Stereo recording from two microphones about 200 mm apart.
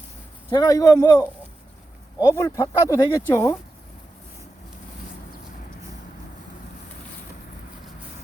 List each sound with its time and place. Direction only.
0.5 s speech: 20° left (ahead or behind)
2.1 s speech: 15° left (ahead or behind)